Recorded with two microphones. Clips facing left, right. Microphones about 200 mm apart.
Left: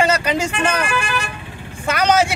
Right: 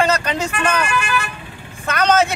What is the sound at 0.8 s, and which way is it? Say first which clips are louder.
Speech: right 1 dB; 35° left (ahead or behind).